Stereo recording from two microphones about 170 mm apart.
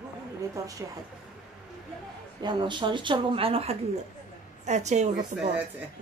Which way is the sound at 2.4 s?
25° right (ahead or behind).